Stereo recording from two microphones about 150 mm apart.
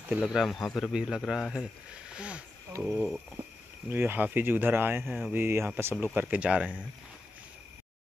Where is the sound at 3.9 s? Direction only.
15° right (ahead or behind).